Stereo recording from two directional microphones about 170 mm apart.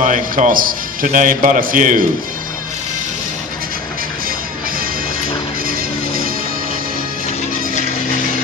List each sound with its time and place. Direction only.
0.0 s a man's voice: 50° right (ahead or behind)
5.7 s music: 60° right (ahead or behind)